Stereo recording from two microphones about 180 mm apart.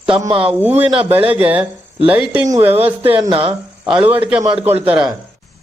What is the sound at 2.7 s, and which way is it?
Speech, 35° right (ahead or behind).